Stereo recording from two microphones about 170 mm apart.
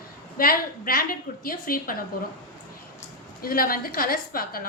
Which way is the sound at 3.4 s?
60° left (ahead or behind).